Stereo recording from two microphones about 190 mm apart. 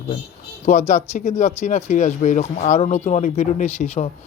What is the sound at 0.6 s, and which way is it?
Speech, 40° left (ahead or behind).